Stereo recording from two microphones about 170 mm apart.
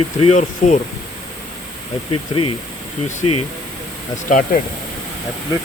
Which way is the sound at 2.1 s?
30° left (ahead or behind).